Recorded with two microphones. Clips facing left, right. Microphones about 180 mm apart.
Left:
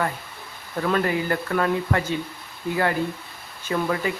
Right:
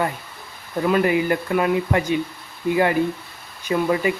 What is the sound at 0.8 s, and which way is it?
Speech, 15° right (ahead or behind).